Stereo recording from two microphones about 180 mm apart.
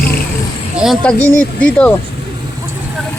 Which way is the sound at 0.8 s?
Centre (ahead or behind).